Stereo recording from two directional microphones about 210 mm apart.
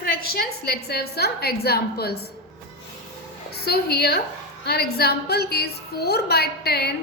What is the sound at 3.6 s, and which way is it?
A woman's voice, 50° left (ahead or behind).